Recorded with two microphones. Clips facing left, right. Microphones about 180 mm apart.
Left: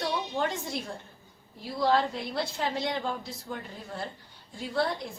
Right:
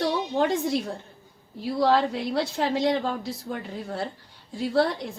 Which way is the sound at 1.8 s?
75° right (ahead or behind).